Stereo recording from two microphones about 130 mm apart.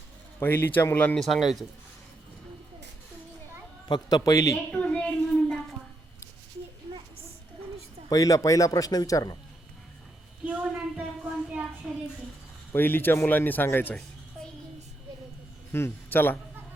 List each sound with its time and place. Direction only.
0.3 s speech: 15° left (ahead or behind); by 1.6 s centre (ahead or behind)
3.8 s a man's voice: 35° left (ahead or behind)
4.2 s a man's voice: 25° left (ahead or behind)
4.5 s a woman's voice: 10° left (ahead or behind)
8.1 s a man's voice: 25° left (ahead or behind)
10.4 s a woman's voice: 10° right (ahead or behind)
12.7 s speech: 15° left (ahead or behind)
15.7 s a man's voice: 15° left (ahead or behind)